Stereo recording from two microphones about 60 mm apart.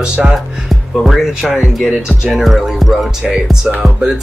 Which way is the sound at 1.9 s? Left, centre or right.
Centre.